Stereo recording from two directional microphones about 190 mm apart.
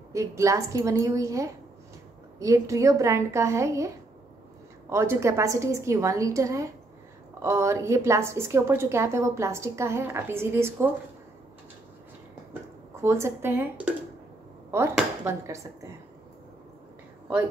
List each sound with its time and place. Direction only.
0.1 s a woman's voice: 15° right (ahead or behind)
12.9 s a woman's voice: 15° right (ahead or behind)
15.2 s a woman's voice: 15° right (ahead or behind)